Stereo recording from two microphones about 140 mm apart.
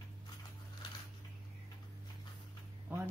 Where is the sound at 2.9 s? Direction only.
15° right (ahead or behind).